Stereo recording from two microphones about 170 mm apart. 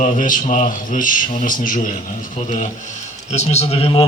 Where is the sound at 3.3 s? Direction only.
40° left (ahead or behind).